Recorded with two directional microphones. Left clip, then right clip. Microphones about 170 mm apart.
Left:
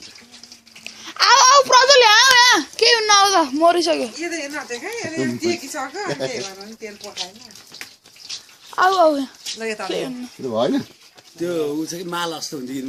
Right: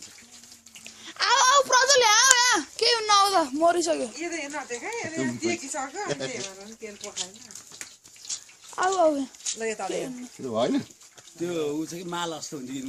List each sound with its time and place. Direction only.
0.9 s a sound: 5° right (ahead or behind)
1.6 s a sound: 15° left (ahead or behind)
4.1 s speech: 45° right (ahead or behind)
6.8 s speech: 75° right (ahead or behind)
8.7 s a child's voice: 5° right (ahead or behind)
9.6 s speech: 35° right (ahead or behind)
10.5 s speech: centre (ahead or behind)
11.3 s speech: 35° right (ahead or behind)